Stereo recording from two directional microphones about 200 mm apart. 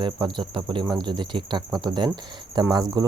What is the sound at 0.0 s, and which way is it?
Speech, 25° right (ahead or behind).